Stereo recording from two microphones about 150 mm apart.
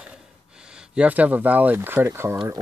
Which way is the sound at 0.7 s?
5° right (ahead or behind).